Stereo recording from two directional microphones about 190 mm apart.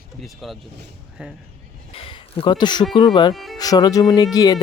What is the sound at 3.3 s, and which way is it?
Speech, centre (ahead or behind).